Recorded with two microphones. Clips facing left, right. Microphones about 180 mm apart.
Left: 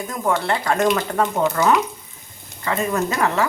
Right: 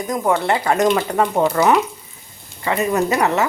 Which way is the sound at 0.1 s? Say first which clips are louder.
Right 4 dB; 15° right (ahead or behind).